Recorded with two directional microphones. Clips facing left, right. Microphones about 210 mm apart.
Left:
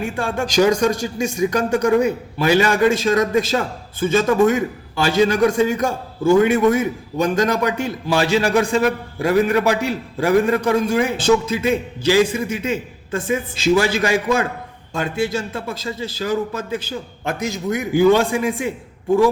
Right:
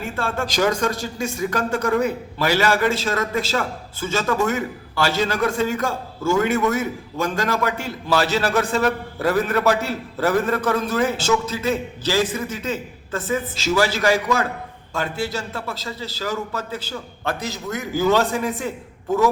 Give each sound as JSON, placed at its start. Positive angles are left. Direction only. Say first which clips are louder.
{"t": 0.0, "sound": "a man's voice", "louder": "left 3 dB", "side_deg": 15}